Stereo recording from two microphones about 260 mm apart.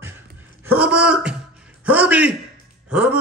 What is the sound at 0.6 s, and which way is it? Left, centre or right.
A man's voice, centre.